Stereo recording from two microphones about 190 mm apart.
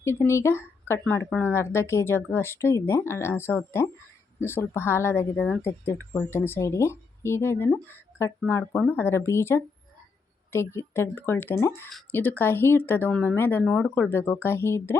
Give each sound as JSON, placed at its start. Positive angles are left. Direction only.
{"t": 0.0, "sound": "speech", "side_deg": 15}